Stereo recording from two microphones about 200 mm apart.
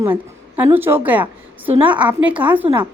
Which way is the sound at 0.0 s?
10° right (ahead or behind).